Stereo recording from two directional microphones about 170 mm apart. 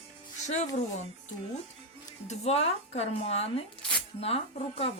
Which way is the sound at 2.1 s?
40° left (ahead or behind).